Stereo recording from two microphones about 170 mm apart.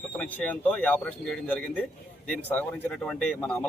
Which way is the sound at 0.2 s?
10° left (ahead or behind).